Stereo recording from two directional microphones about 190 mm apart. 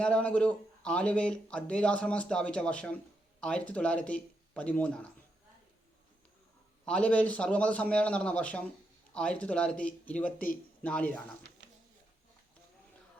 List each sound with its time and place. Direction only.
0.0 s a man's voice: 5° left (ahead or behind)
6.8 s a man's voice: 5° left (ahead or behind)
10.3 s speech: 45° left (ahead or behind)
10.8 s a man's voice: 5° left (ahead or behind)